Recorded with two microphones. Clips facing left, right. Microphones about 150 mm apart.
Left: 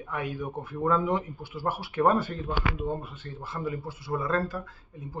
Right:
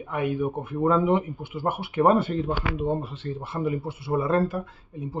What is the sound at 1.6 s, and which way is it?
Speech, 55° right (ahead or behind).